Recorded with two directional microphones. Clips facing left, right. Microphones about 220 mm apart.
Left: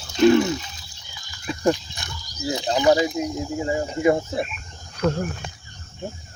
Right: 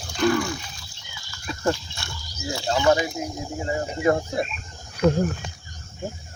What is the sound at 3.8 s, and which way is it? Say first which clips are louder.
Speech: left 2 dB; 15° left (ahead or behind).